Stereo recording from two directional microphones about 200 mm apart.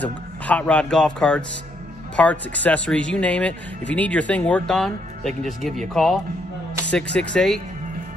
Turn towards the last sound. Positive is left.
turn(degrees=5)  # may be behind; listen again after turning